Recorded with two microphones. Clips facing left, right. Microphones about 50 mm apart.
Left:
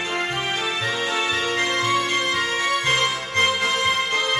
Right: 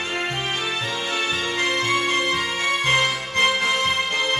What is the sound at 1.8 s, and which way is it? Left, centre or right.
Music, right.